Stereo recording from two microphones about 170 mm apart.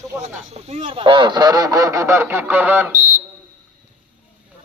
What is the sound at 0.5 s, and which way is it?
Speech, 40° right (ahead or behind).